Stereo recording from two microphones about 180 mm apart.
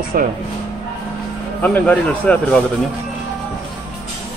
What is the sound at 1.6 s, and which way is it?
Speech, 10° left (ahead or behind).